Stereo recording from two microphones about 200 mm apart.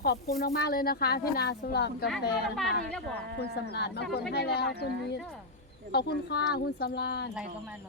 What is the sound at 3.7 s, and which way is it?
Speech, 55° left (ahead or behind).